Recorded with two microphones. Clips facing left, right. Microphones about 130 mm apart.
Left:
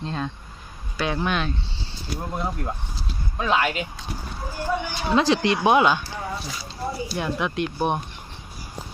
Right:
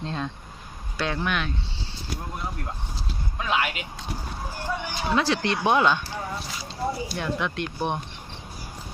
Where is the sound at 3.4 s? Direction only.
35° left (ahead or behind).